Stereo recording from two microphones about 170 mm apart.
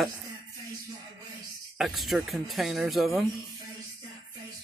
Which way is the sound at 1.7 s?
Centre (ahead or behind).